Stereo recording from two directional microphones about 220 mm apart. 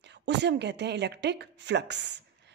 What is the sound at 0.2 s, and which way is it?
Speech, 50° right (ahead or behind).